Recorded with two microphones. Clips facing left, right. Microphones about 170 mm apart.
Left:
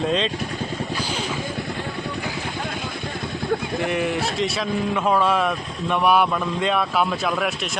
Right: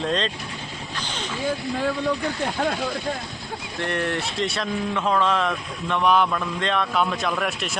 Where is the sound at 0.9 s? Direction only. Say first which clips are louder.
Left 5 dB; 10° left (ahead or behind).